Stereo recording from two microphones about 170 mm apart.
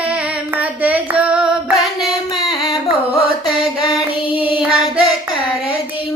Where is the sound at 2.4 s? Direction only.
25° left (ahead or behind).